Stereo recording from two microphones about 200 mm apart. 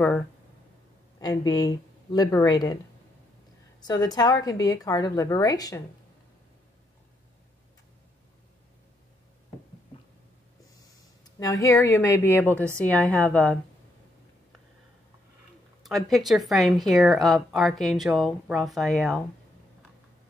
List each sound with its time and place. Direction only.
1.2 s speech: 20° left (ahead or behind)
3.8 s a woman's voice: 20° left (ahead or behind)
11.2 s a woman's voice: 15° left (ahead or behind)
15.8 s speech: centre (ahead or behind)